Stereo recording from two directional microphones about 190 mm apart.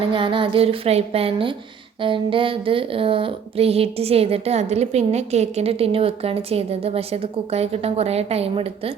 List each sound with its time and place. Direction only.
0.1 s a woman's voice: 25° right (ahead or behind)